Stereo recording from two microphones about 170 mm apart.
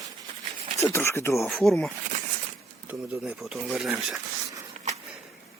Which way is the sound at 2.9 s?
10° right (ahead or behind).